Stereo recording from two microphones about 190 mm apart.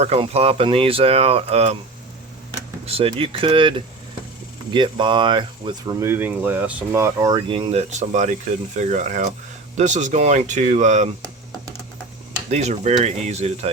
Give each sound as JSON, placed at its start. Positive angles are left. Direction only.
{"t": 0.0, "sound": "speech", "side_deg": -30}
{"t": 2.8, "sound": "speech", "side_deg": -30}
{"t": 12.5, "sound": "speech", "side_deg": -35}